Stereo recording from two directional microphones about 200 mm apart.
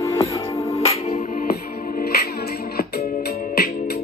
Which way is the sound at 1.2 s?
45° left (ahead or behind).